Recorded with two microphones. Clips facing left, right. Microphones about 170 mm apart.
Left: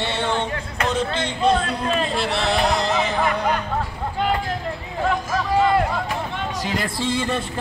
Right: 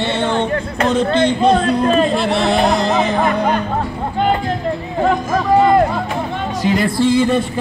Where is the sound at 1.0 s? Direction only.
55° right (ahead or behind).